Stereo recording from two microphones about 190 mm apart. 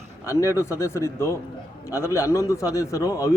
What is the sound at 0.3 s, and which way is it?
Speech, 15° left (ahead or behind).